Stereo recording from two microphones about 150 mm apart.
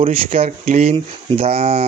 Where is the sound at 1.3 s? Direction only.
40° right (ahead or behind).